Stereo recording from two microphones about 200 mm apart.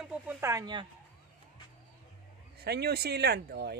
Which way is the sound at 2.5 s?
55° right (ahead or behind).